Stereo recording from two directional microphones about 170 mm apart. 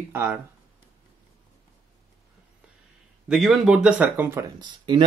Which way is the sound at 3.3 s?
Centre (ahead or behind).